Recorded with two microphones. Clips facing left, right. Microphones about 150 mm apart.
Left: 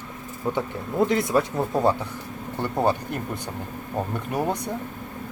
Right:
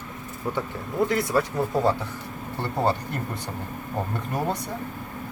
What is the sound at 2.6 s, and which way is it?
Speech, 15° left (ahead or behind).